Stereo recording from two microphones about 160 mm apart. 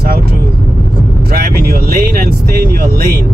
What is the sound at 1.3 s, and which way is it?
Speech, 70° right (ahead or behind).